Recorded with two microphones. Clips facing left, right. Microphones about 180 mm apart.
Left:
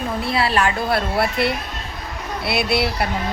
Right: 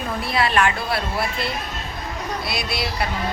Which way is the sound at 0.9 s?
65° left (ahead or behind).